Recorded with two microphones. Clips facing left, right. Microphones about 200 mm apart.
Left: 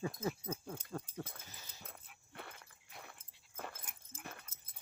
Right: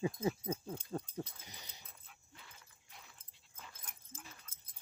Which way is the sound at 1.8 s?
60° left (ahead or behind).